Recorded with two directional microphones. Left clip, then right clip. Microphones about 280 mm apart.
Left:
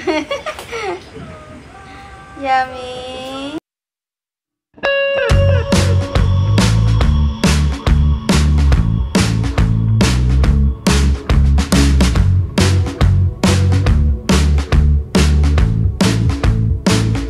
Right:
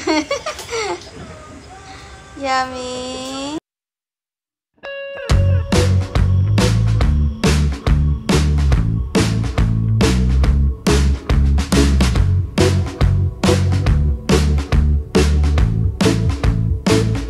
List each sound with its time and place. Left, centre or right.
0.0 s a sound: centre
2.4 s speech: centre
4.8 s music: centre